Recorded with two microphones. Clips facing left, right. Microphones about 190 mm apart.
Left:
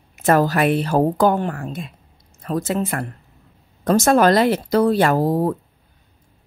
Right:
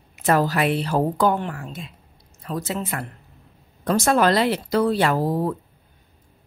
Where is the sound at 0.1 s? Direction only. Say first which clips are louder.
Left 3 dB; 50° left (ahead or behind).